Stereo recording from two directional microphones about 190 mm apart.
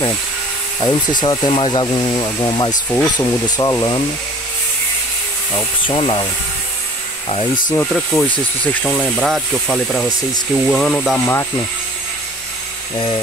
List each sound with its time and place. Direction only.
0.7 s speech: 25° left (ahead or behind)
5.9 s speech: 25° left (ahead or behind)
7.9 s speech: 5° left (ahead or behind)
11.1 s speech: 15° left (ahead or behind)